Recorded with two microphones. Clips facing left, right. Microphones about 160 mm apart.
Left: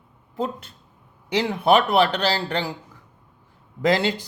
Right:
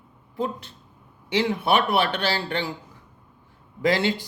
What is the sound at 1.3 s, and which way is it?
Speech, 40° left (ahead or behind).